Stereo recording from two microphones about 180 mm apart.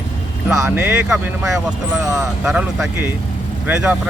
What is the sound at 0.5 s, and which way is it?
Speech, 10° right (ahead or behind).